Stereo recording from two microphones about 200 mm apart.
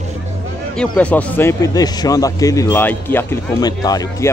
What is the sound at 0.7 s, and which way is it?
A man's voice, 5° left (ahead or behind).